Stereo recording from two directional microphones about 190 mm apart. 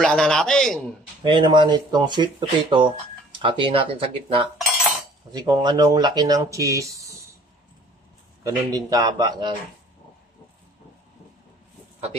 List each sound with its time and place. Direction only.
0.0 s a man's voice: 5° left (ahead or behind)
1.2 s speech: 25° right (ahead or behind)
8.4 s speech: 20° right (ahead or behind)